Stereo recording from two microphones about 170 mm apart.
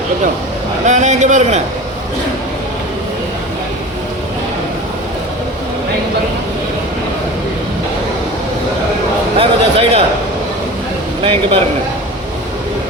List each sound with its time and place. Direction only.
0.9 s a man's voice: 45° right (ahead or behind)
9.4 s a man's voice: 35° right (ahead or behind)
11.2 s a man's voice: 30° right (ahead or behind)